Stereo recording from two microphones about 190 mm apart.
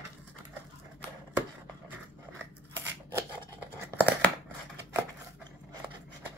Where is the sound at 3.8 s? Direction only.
10° left (ahead or behind).